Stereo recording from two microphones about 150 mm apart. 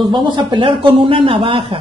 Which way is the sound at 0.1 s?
30° right (ahead or behind).